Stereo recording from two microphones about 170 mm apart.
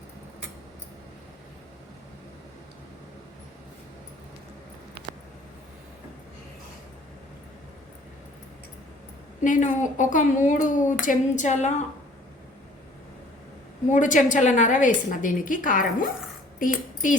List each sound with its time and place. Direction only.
9.4 s a woman's voice: 50° left (ahead or behind)
13.9 s a woman's voice: 50° left (ahead or behind)